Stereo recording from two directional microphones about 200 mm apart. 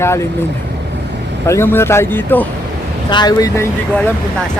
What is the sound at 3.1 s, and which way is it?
Speech, 20° left (ahead or behind).